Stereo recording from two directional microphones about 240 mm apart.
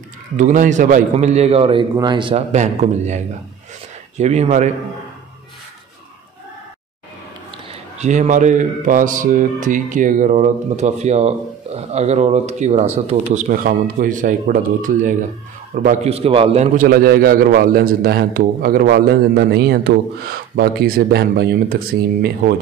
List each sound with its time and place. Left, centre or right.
0.4 s a man's voice: right
4.2 s a man's voice: right
8.0 s speech: right